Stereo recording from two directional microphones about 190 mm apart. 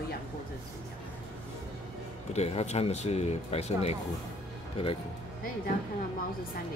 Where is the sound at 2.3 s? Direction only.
35° left (ahead or behind).